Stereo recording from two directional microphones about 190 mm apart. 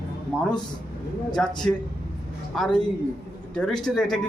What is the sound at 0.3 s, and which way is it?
A man's voice, centre (ahead or behind).